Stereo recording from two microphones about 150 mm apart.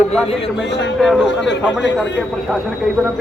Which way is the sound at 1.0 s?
Centre (ahead or behind).